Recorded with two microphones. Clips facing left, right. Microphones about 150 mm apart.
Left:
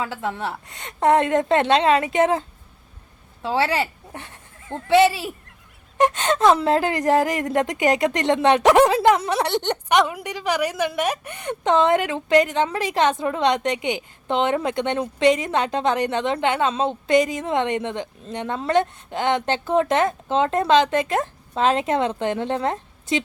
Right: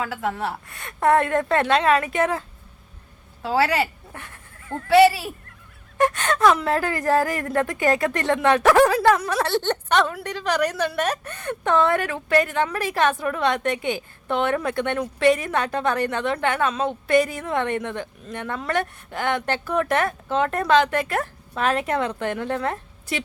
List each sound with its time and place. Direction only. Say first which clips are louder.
0.0 s speech: even; 25° left (ahead or behind)
3.4 s speech: right 1 dB; 25° left (ahead or behind)